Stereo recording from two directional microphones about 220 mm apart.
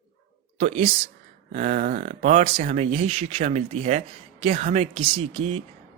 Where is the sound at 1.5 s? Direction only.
35° right (ahead or behind).